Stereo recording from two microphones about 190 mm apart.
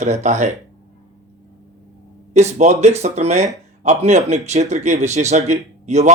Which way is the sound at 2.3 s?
35° right (ahead or behind).